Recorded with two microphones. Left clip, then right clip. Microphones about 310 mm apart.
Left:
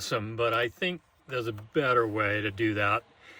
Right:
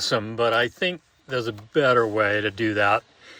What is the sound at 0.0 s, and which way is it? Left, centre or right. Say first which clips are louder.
Speech: right 6 dB; centre.